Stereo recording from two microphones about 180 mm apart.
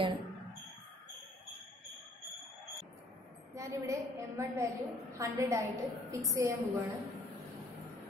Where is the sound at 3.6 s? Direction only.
15° right (ahead or behind).